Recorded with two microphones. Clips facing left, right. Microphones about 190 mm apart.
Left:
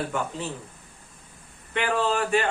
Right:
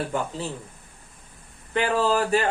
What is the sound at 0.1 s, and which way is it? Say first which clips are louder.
Speech: right 3 dB; 35° right (ahead or behind).